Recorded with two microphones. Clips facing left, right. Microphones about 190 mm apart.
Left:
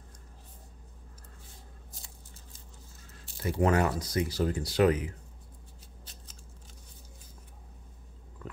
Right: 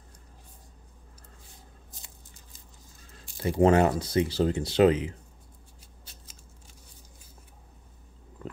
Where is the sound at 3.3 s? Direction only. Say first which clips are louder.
Right 4 dB; 15° right (ahead or behind).